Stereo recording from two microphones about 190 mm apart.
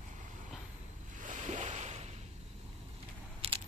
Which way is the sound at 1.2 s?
40° right (ahead or behind).